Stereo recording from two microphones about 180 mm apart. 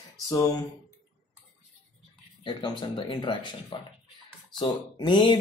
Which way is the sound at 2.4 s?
25° left (ahead or behind).